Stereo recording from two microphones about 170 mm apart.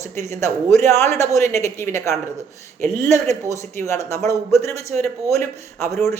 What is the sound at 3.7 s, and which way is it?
A man's voice, 15° left (ahead or behind).